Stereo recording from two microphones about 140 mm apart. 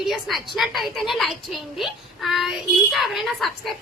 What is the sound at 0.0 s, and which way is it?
A woman's voice, centre (ahead or behind).